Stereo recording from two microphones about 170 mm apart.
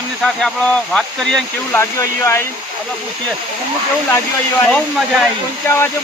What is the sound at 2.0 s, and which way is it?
Speech, 15° left (ahead or behind).